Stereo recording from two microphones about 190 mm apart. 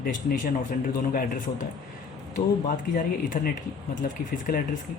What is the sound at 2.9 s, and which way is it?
Speech, 45° left (ahead or behind).